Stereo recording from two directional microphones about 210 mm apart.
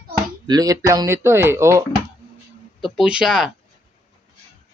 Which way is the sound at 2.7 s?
Centre (ahead or behind).